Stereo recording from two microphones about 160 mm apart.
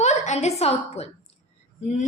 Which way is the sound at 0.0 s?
45° left (ahead or behind).